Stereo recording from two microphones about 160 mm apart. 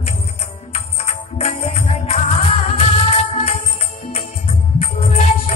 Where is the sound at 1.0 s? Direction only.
40° left (ahead or behind).